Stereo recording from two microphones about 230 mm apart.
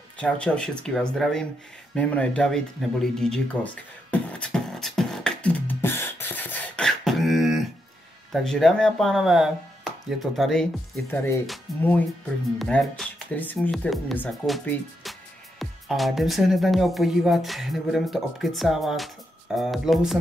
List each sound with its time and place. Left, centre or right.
0.2 s speech: centre
2.0 s a sound: centre
8.3 s speech: centre